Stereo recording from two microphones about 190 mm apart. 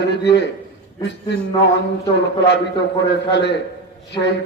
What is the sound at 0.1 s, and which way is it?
Speech, 65° left (ahead or behind).